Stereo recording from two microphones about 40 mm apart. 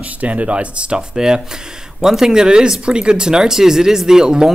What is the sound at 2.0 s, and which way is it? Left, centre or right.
Speech, centre.